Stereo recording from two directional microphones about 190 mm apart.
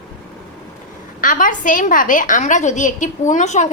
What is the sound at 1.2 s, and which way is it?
A woman's voice, 45° left (ahead or behind).